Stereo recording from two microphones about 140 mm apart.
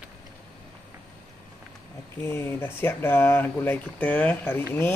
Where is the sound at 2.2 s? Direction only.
15° left (ahead or behind).